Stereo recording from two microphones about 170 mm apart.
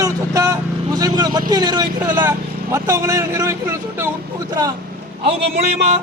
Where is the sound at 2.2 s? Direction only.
15° right (ahead or behind).